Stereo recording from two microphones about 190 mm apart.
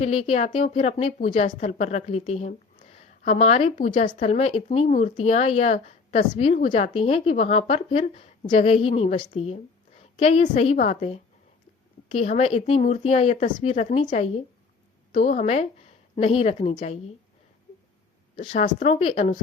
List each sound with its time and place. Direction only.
0.0 s speech: 35° left (ahead or behind)
18.3 s speech: 40° left (ahead or behind)